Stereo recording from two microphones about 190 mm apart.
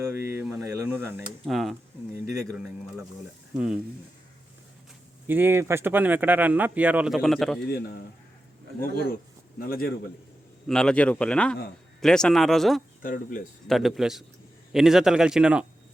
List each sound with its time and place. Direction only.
0.1 s speech: 10° right (ahead or behind)
1.5 s a man's voice: centre (ahead or behind)
2.1 s speech: 15° right (ahead or behind)
5.3 s speech: 10° right (ahead or behind)
7.6 s a man's voice: 55° left (ahead or behind)
10.7 s a man's voice: 5° left (ahead or behind)
13.0 s speech: 45° left (ahead or behind)
13.7 s a man's voice: centre (ahead or behind)